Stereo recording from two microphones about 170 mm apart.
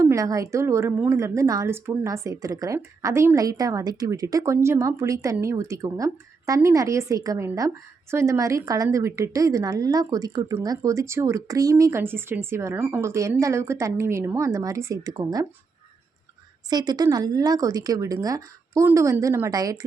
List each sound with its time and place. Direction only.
0.0 s a woman's voice: 20° right (ahead or behind)
16.6 s a woman's voice: 25° right (ahead or behind)